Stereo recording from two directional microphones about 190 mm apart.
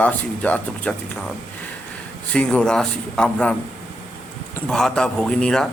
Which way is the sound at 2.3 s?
5° left (ahead or behind).